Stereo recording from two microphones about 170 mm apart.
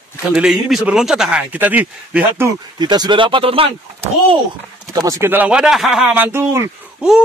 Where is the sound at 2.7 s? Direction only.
25° right (ahead or behind).